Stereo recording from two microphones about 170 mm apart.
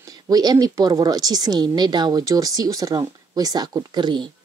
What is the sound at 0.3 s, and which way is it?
Speech, 25° right (ahead or behind).